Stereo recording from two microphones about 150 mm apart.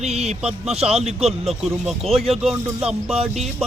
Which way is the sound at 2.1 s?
40° right (ahead or behind).